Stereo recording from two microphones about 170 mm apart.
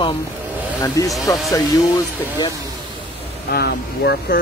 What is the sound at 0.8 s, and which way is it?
Speech, 20° left (ahead or behind).